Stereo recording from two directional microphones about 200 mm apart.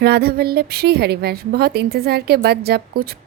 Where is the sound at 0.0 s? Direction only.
50° right (ahead or behind).